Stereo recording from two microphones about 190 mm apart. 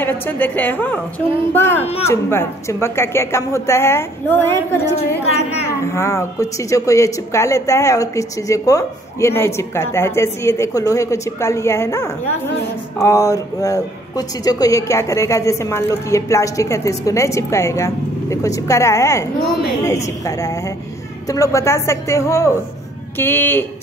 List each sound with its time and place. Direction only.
0.0 s a woman's voice: 10° left (ahead or behind)
5.9 s a woman's voice: 15° left (ahead or behind)